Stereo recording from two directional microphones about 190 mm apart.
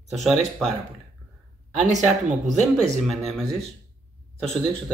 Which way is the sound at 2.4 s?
Centre (ahead or behind).